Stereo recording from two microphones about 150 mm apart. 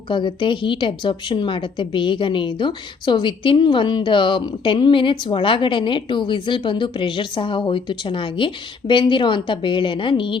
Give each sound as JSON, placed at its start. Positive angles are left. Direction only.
{"t": 0.1, "sound": "a woman's voice", "side_deg": 30}